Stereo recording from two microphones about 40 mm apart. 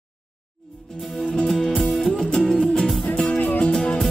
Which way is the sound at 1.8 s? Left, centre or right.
Centre.